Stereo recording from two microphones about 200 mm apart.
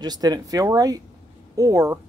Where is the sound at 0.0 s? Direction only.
20° right (ahead or behind).